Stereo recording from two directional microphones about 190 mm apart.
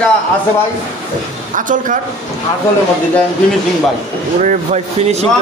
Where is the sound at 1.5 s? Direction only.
45° right (ahead or behind).